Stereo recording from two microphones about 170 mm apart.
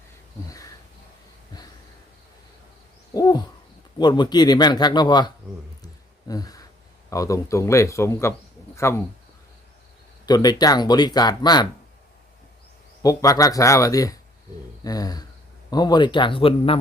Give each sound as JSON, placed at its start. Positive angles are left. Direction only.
{"t": 3.1, "sound": "dog", "side_deg": 20}
{"t": 3.9, "sound": "speech", "side_deg": 25}
{"t": 5.8, "sound": "a sound", "side_deg": 20}
{"t": 7.1, "sound": "speech", "side_deg": 20}
{"t": 8.7, "sound": "a sound", "side_deg": 15}
{"t": 10.2, "sound": "speech", "side_deg": 25}
{"t": 13.0, "sound": "speech", "side_deg": 20}